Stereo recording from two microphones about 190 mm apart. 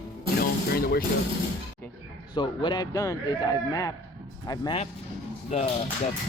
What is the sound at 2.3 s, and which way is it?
Speech, 25° left (ahead or behind).